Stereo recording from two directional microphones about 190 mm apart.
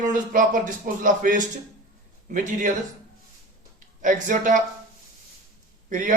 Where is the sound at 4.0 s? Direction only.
40° right (ahead or behind).